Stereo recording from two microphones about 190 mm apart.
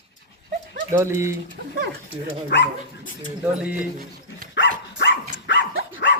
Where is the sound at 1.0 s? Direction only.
15° right (ahead or behind).